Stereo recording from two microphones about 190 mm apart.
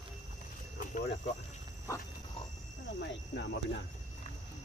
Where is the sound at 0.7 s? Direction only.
45° left (ahead or behind).